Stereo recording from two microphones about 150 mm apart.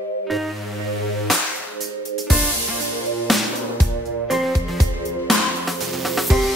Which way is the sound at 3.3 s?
Centre (ahead or behind).